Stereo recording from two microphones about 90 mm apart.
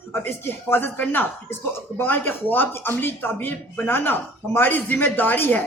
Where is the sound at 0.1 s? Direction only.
25° left (ahead or behind).